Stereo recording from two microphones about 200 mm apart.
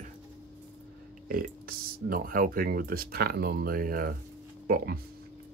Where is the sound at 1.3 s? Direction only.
45° right (ahead or behind).